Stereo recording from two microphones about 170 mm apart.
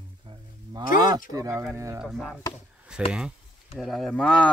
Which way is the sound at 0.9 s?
25° right (ahead or behind).